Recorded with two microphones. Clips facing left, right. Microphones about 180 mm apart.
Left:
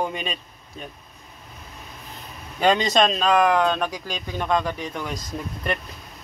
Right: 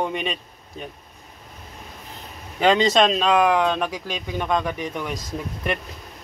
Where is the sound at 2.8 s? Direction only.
25° right (ahead or behind).